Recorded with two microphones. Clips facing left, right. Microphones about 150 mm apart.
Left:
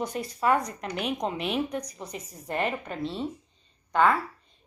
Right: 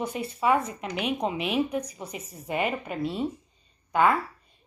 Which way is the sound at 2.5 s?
5° right (ahead or behind).